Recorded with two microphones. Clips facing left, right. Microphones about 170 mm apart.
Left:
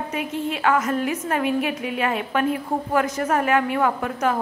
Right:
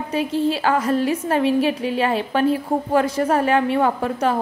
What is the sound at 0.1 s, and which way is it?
A woman's voice, 30° right (ahead or behind).